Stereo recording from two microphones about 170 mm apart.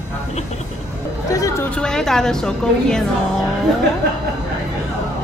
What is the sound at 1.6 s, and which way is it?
A woman's voice, 5° left (ahead or behind).